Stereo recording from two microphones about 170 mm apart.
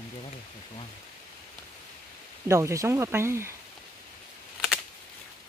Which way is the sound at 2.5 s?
15° right (ahead or behind).